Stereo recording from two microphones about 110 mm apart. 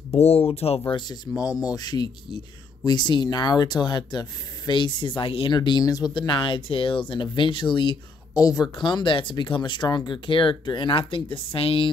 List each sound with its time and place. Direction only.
0.1 s speech: 65° left (ahead or behind)
0.9 s speech: 40° left (ahead or behind)
6.1 s speech: 50° left (ahead or behind)
8.4 s speech: 35° left (ahead or behind); by 11.9 s 55° left (ahead or behind)